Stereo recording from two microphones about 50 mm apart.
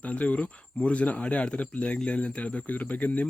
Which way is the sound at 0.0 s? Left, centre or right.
Left.